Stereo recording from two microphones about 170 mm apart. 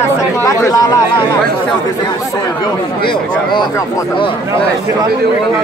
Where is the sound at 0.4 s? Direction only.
20° left (ahead or behind).